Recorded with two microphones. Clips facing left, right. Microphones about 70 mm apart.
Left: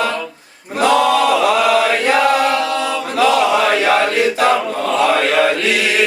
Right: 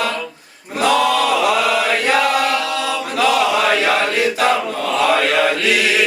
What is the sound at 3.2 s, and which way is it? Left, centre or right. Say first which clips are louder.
Chant: left 3 dB; left.